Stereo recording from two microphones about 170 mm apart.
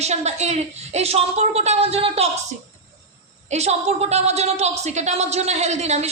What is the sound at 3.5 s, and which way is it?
A woman's voice, 40° right (ahead or behind).